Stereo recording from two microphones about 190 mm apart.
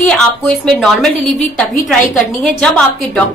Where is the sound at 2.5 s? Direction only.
5° left (ahead or behind).